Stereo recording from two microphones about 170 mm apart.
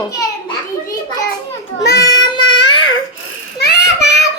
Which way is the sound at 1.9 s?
20° left (ahead or behind).